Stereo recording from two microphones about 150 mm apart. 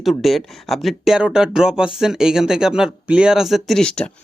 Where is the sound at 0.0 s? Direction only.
Centre (ahead or behind).